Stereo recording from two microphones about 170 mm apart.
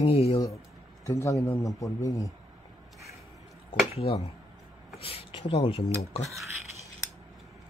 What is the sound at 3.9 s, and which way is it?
Speech, 35° left (ahead or behind).